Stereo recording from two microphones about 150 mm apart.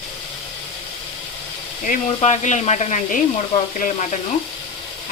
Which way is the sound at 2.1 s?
50° left (ahead or behind).